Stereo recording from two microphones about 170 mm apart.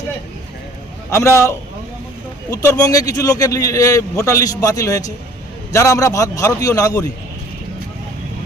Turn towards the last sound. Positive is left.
turn(degrees=20)  # may be behind; listen again after turning